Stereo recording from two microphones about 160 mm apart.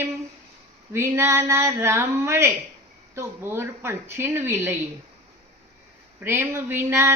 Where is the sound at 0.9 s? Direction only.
15° right (ahead or behind).